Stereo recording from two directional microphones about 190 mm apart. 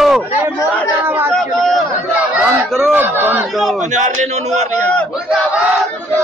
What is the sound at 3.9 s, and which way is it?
Battle cry, 40° right (ahead or behind).